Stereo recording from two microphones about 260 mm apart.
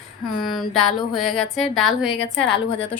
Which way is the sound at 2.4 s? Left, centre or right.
Left.